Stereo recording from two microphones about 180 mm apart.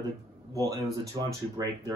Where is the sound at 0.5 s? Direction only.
20° right (ahead or behind).